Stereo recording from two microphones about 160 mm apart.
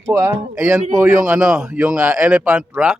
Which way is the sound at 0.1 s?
15° right (ahead or behind).